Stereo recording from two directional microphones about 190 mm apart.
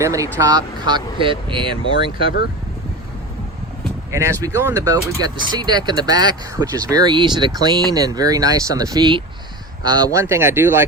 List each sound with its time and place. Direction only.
0.0 s speech: 15° right (ahead or behind)
4.1 s speech: 15° right (ahead or behind)